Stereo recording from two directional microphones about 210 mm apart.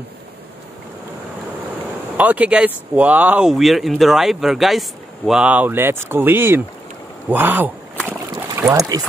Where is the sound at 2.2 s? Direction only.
5° right (ahead or behind).